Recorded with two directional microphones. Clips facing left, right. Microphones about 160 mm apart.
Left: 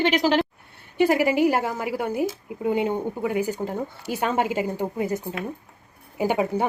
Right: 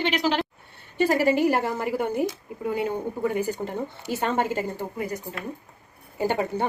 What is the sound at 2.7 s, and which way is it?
Speech, 20° left (ahead or behind).